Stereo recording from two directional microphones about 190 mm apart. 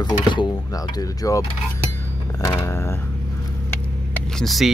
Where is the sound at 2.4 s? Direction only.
15° left (ahead or behind).